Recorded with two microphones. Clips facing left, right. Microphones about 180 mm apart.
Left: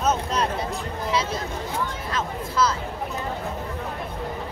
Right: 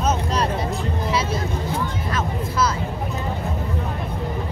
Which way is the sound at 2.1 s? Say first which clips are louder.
Even; 10° right (ahead or behind).